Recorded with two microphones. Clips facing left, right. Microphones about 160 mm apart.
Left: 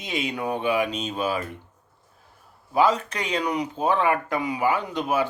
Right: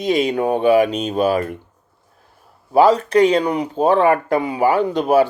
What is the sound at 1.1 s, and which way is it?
Speech, 40° right (ahead or behind).